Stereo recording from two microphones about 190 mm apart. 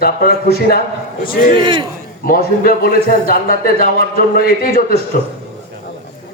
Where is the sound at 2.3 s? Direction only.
50° left (ahead or behind).